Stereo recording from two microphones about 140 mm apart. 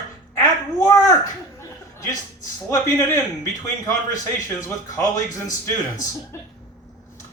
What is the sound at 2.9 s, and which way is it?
Speech, 20° left (ahead or behind).